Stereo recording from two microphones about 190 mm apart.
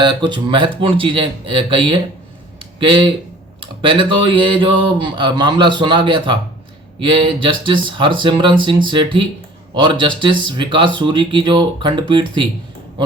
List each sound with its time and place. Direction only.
0.0 s speech: 25° right (ahead or behind)
2.6 s a sound: 25° right (ahead or behind)
3.6 s speech: 25° right (ahead or behind)